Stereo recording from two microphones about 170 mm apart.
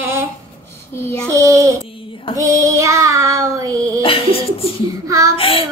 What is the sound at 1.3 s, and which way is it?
Child singing, 15° right (ahead or behind).